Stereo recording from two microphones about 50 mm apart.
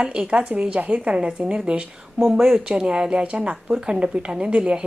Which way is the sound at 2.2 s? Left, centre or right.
Centre.